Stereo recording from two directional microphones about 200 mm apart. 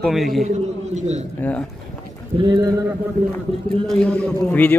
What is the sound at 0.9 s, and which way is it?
Speech, 35° right (ahead or behind).